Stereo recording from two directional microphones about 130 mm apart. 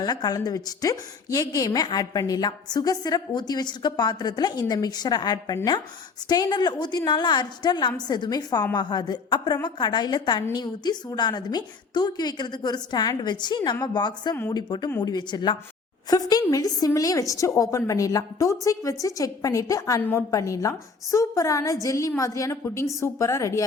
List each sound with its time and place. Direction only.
0.0 s a woman's voice: 30° left (ahead or behind)
20.0 s a woman's voice: 15° left (ahead or behind)
20.3 s a woman's voice: 25° left (ahead or behind)